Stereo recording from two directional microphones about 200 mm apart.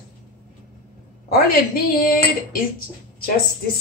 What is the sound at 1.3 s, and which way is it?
Speech, 45° left (ahead or behind).